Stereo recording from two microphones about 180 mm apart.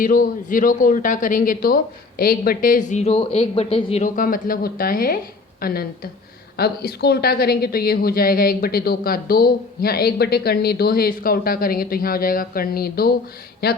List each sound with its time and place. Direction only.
0.0 s a man's voice: 50° left (ahead or behind); by 4.0 s 30° left (ahead or behind)
4.0 s a man's voice: 50° left (ahead or behind)